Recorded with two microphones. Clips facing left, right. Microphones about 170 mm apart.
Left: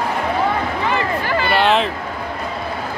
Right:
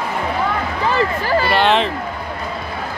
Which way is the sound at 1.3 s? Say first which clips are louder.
Right 3 dB; 35° right (ahead or behind).